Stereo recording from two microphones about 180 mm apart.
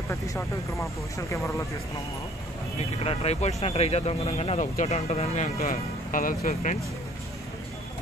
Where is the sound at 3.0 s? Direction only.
35° left (ahead or behind).